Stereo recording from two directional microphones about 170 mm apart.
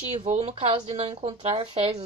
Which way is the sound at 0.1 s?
40° right (ahead or behind).